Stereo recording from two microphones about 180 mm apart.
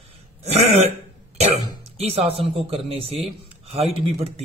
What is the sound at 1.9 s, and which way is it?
A man's voice, 30° right (ahead or behind).